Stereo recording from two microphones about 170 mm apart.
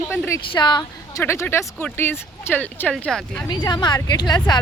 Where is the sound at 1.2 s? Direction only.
15° left (ahead or behind).